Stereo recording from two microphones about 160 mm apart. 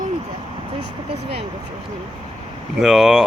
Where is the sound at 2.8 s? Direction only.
Centre (ahead or behind).